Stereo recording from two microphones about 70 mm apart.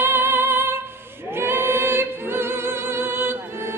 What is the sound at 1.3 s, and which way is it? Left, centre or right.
A capella, right.